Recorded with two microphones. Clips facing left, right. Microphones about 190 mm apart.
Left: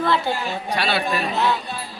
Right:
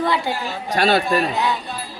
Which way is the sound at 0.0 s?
15° right (ahead or behind).